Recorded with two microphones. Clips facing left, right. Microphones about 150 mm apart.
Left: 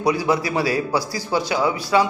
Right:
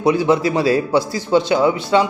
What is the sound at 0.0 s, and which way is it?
A man's voice, 25° right (ahead or behind).